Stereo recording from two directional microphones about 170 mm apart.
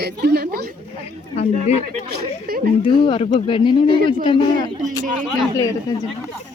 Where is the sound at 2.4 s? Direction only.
60° right (ahead or behind).